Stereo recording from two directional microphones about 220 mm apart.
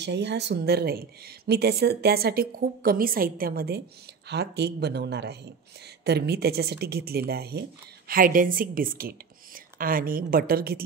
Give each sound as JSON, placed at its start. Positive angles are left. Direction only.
{"t": 0.0, "sound": "a woman's voice", "side_deg": -50}